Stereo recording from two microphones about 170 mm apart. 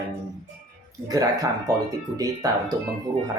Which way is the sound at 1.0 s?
20° right (ahead or behind).